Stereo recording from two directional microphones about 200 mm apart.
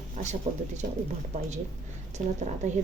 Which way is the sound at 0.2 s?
35° right (ahead or behind).